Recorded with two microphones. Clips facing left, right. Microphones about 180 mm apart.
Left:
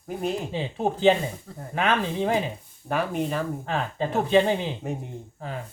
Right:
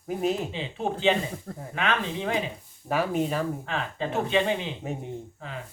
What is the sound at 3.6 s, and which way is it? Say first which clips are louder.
Speech: left 3 dB; 40° left (ahead or behind).